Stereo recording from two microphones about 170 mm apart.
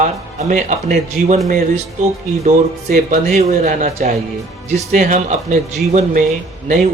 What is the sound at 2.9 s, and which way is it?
Speech, 50° right (ahead or behind).